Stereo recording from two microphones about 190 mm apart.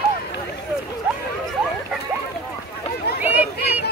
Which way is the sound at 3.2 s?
10° right (ahead or behind).